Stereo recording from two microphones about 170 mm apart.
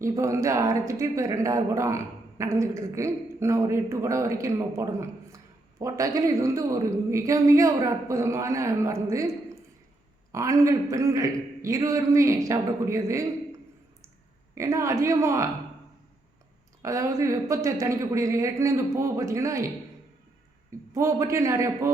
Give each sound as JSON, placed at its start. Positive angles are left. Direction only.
{"t": 0.0, "sound": "a woman's voice", "side_deg": -15}
{"t": 10.3, "sound": "a woman's voice", "side_deg": -20}
{"t": 14.6, "sound": "a woman's voice", "side_deg": -15}
{"t": 16.8, "sound": "a woman's voice", "side_deg": -20}